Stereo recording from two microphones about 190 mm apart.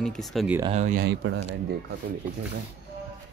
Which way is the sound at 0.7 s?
40° right (ahead or behind).